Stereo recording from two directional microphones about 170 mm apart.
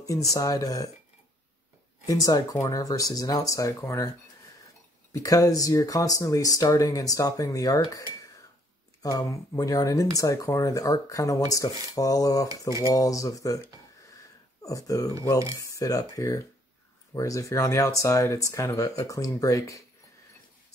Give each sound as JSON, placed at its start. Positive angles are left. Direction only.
{"t": 0.0, "sound": "speech", "side_deg": 20}
{"t": 2.0, "sound": "speech", "side_deg": 20}
{"t": 5.1, "sound": "speech", "side_deg": 20}
{"t": 9.0, "sound": "speech", "side_deg": 20}
{"t": 12.4, "sound": "speech", "side_deg": -20}
{"t": 12.8, "sound": "speech", "side_deg": 20}
{"t": 14.0, "sound": "a sound", "side_deg": 20}
{"t": 15.6, "sound": "speech", "side_deg": 20}